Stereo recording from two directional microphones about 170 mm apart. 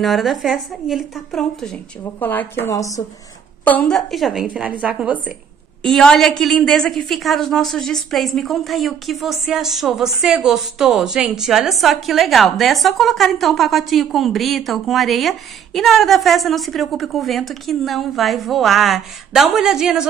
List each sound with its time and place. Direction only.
0.0 s a woman's voice: centre (ahead or behind); by 3.0 s 20° left (ahead or behind)
3.6 s a woman's voice: 5° left (ahead or behind)
5.8 s a woman's voice: 5° left (ahead or behind)